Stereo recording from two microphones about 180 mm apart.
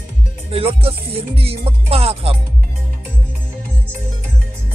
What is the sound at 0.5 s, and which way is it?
Music, 30° right (ahead or behind).